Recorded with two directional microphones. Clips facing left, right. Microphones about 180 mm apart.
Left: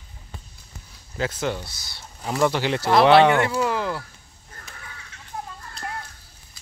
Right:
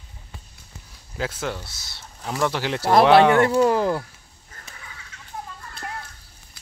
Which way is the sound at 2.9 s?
45° right (ahead or behind).